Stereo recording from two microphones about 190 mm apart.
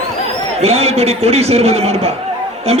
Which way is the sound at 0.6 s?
35° right (ahead or behind).